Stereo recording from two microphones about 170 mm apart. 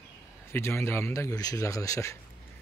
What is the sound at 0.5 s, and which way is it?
Speech, 15° left (ahead or behind).